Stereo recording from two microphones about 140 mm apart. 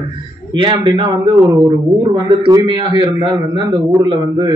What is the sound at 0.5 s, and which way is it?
Speech, 35° right (ahead or behind).